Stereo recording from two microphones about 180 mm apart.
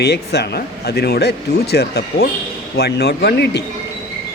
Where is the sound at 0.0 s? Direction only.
65° left (ahead or behind).